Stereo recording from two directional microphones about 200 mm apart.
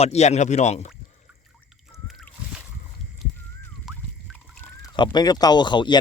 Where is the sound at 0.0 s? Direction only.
35° left (ahead or behind).